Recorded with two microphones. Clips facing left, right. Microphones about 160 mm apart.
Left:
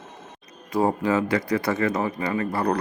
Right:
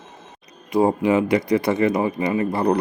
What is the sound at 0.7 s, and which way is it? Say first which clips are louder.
Speech: right 4 dB; 15° right (ahead or behind).